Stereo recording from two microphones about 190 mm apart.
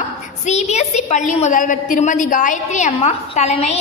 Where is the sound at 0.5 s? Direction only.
35° left (ahead or behind).